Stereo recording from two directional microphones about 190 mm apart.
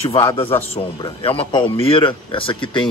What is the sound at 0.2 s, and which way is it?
A man's voice, 25° left (ahead or behind).